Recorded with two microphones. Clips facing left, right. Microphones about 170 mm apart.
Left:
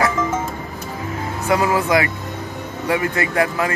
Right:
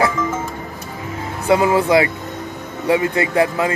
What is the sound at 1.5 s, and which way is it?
Speech, 25° right (ahead or behind).